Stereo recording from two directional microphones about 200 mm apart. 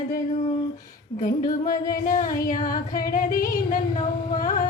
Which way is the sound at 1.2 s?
40° left (ahead or behind).